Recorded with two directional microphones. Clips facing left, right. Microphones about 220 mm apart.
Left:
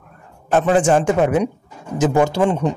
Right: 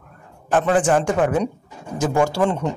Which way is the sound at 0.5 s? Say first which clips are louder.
Left 2 dB; 25° left (ahead or behind).